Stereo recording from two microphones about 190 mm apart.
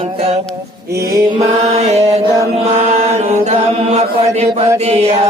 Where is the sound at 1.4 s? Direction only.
35° right (ahead or behind).